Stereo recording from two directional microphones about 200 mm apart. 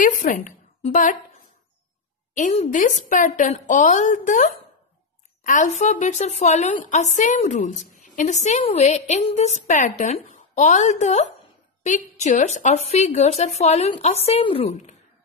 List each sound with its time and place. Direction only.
0.0 s a woman's voice: 40° left (ahead or behind)
2.3 s a woman's voice: 40° left (ahead or behind)